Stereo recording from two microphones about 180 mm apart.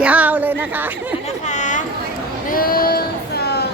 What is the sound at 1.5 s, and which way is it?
Chatter, 40° left (ahead or behind).